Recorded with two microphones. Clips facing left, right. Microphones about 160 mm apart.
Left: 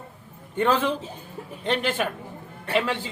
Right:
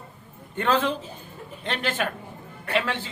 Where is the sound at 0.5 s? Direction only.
10° left (ahead or behind).